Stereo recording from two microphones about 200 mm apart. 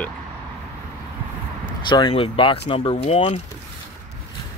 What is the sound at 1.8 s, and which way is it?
Speech, 20° left (ahead or behind).